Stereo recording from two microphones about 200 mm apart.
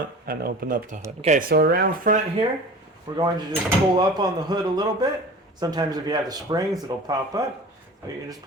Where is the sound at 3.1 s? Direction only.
20° right (ahead or behind).